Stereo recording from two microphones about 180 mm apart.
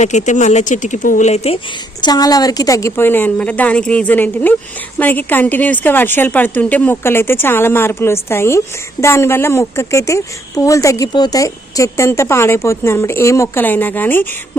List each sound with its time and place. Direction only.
0.0 s speech: 40° left (ahead or behind)
2.0 s a woman's voice: 20° left (ahead or behind)